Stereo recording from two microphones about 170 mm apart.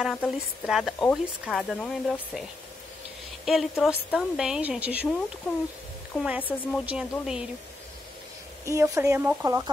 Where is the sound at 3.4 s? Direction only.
Centre (ahead or behind).